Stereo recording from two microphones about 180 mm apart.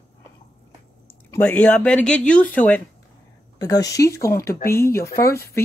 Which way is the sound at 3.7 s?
20° left (ahead or behind).